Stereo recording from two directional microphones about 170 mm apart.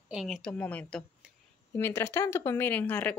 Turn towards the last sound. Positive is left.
turn(degrees=10)  # may be behind; listen again after turning